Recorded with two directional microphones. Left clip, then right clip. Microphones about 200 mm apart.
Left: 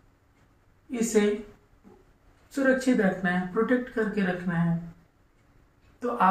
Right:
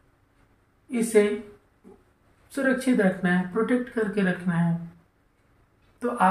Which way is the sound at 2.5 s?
40° right (ahead or behind).